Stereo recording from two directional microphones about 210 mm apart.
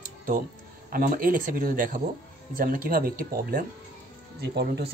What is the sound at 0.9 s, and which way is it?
A man's voice, 45° right (ahead or behind).